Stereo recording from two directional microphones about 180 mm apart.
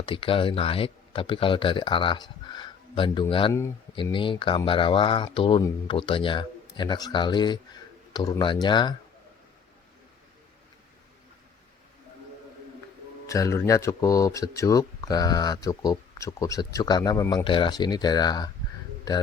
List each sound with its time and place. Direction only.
0.0 s speech: 30° left (ahead or behind)
13.2 s speech: 15° left (ahead or behind)